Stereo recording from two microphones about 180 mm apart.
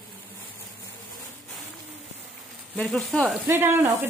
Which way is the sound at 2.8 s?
Centre (ahead or behind).